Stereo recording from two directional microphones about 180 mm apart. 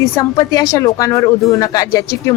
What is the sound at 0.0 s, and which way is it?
Speech, 20° left (ahead or behind).